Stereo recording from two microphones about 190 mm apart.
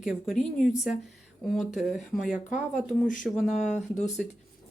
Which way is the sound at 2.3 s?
40° left (ahead or behind).